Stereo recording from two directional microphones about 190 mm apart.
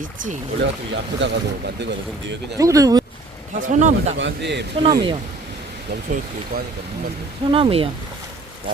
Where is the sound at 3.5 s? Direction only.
40° right (ahead or behind).